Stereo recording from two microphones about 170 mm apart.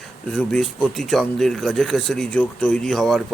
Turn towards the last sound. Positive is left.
turn(degrees=0)  # may be behind; listen again after turning